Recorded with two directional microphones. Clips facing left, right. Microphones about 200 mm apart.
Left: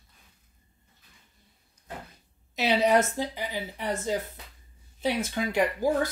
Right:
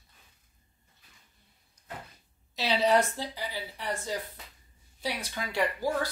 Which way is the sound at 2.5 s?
20° left (ahead or behind).